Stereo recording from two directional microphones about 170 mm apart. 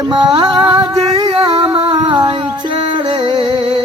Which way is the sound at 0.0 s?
25° right (ahead or behind).